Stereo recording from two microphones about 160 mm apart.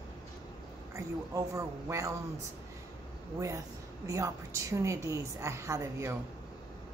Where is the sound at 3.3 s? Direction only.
20° right (ahead or behind).